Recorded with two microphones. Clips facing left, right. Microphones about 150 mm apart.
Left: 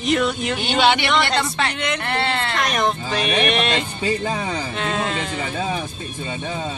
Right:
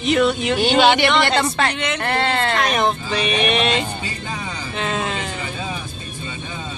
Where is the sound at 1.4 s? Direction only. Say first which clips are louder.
Right 3 dB; 45° right (ahead or behind).